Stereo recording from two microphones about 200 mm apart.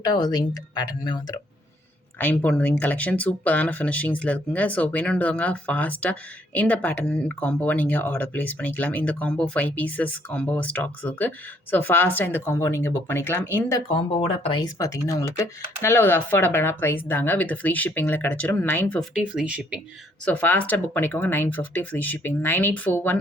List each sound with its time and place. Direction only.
0.0 s speech: 20° left (ahead or behind)
2.1 s speech: 10° left (ahead or behind)
13.8 s speech: 30° left (ahead or behind); by 19.0 s 10° left (ahead or behind)
19.1 s speech: 5° right (ahead or behind)
20.2 s speech: 5° left (ahead or behind)